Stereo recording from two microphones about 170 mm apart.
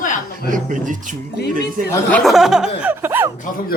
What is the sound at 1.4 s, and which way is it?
Snicker, 75° left (ahead or behind).